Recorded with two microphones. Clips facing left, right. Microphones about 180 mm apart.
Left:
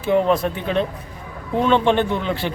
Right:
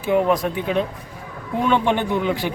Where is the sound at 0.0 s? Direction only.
10° right (ahead or behind).